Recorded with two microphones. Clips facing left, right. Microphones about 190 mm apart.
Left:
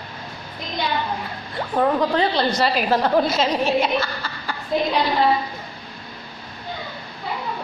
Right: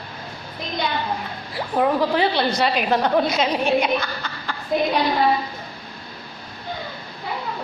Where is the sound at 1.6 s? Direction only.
5° right (ahead or behind).